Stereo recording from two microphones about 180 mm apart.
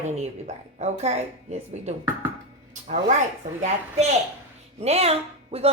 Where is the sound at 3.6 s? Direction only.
35° right (ahead or behind).